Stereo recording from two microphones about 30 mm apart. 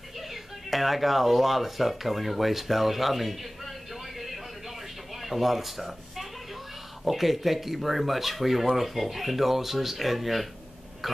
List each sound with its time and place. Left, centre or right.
0.3 s speech: centre
5.2 s speech: centre